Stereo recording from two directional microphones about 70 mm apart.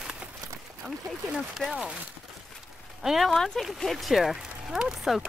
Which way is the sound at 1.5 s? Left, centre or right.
Centre.